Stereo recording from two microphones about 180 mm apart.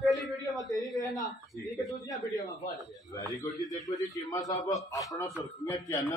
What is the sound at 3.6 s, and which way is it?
Speech, centre (ahead or behind).